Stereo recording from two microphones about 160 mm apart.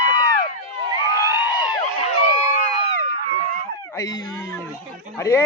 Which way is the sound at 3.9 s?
20° left (ahead or behind).